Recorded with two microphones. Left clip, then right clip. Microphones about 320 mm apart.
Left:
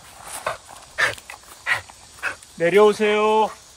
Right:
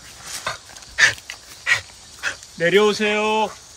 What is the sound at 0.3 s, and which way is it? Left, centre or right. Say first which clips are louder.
Dog: even; centre.